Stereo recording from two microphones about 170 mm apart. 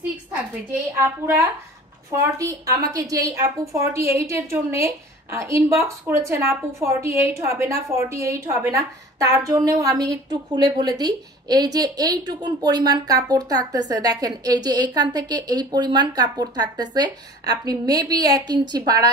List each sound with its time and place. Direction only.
0.9 s a woman's voice: 15° right (ahead or behind)